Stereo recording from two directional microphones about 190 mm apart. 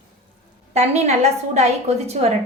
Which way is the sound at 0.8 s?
35° right (ahead or behind).